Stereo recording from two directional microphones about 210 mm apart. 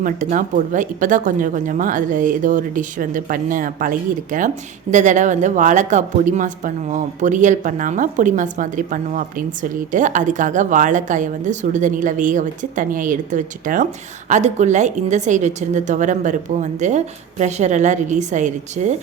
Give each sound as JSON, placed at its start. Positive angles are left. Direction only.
{"t": 0.0, "sound": "speech", "side_deg": -40}